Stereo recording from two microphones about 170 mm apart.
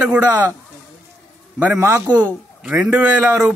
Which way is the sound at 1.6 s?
10° right (ahead or behind).